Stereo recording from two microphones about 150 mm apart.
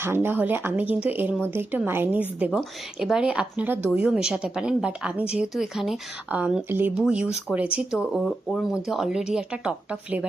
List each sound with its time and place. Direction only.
0.0 s speech: 15° right (ahead or behind)